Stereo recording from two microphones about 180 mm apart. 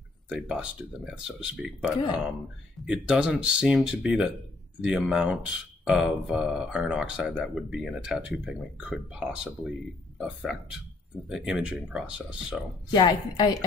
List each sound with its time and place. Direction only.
0.3 s speech: 5° right (ahead or behind)
3.1 s speech: 5° right (ahead or behind)
12.9 s a woman's voice: 25° left (ahead or behind)